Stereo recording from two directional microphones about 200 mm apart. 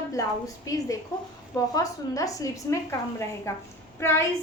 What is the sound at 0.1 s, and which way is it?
A woman's voice, 15° left (ahead or behind).